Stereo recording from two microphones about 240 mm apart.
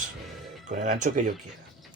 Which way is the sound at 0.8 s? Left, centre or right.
Right.